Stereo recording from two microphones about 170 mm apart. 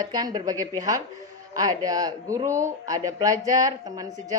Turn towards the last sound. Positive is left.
turn(degrees=-20)  # may be behind; listen again after turning